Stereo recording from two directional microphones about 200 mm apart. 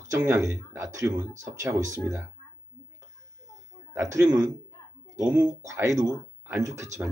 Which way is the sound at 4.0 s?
15° right (ahead or behind).